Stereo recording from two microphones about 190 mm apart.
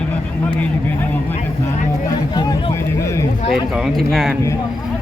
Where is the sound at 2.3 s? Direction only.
20° left (ahead or behind).